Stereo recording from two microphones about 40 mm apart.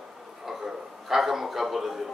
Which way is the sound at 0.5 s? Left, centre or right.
Centre.